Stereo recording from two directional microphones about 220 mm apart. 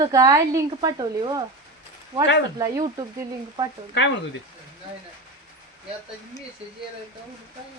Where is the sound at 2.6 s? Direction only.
15° right (ahead or behind).